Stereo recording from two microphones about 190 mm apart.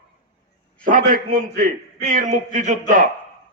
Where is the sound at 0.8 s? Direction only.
45° right (ahead or behind).